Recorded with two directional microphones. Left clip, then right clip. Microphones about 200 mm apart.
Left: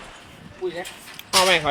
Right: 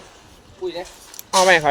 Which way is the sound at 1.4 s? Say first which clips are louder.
Right 5 dB; 40° right (ahead or behind).